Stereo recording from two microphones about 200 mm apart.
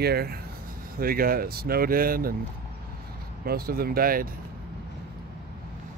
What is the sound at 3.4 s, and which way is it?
Speech, 50° right (ahead or behind).